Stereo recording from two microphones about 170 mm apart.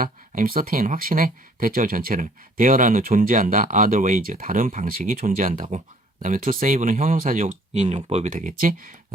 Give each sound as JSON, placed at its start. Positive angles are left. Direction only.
{"t": 0.0, "sound": "speech", "side_deg": -55}